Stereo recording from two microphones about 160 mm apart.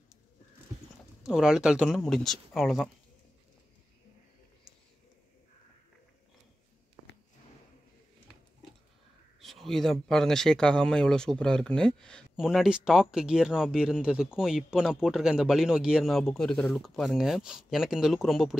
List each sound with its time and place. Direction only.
1.2 s speech: 5° right (ahead or behind)
7.0 s a sound: 30° left (ahead or behind)
9.4 s speech: centre (ahead or behind)